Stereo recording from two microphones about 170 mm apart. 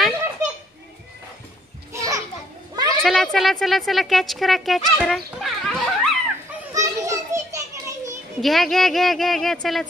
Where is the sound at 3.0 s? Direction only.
Centre (ahead or behind).